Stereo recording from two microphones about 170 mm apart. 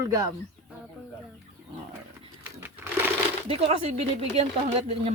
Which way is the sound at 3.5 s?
35° right (ahead or behind).